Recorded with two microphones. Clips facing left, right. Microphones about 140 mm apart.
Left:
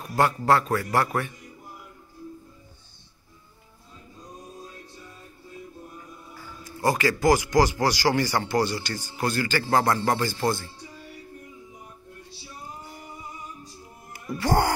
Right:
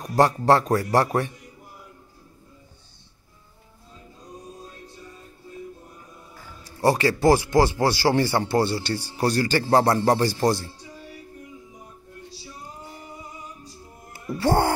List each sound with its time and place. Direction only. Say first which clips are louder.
0.1 s speech: right 3 dB; 35° right (ahead or behind)
6.8 s speech: right 3 dB; 30° right (ahead or behind)
14.1 s music: right 2 dB; 25° right (ahead or behind)